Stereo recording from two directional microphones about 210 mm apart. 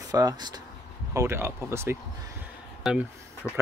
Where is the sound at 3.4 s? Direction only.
15° left (ahead or behind).